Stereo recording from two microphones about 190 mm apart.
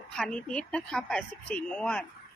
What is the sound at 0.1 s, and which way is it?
A woman's voice, 5° left (ahead or behind).